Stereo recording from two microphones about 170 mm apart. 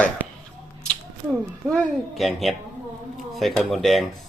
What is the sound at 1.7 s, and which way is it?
Speech, 5° left (ahead or behind).